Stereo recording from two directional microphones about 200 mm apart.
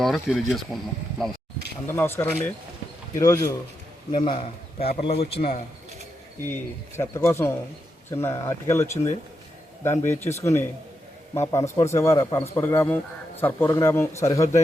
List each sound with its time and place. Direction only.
0.0 s speech: centre (ahead or behind)
1.9 s a man's voice: 10° left (ahead or behind); by 5.5 s 30° left (ahead or behind)
6.4 s a man's voice: 10° left (ahead or behind)
10.3 s a man's voice: 15° left (ahead or behind)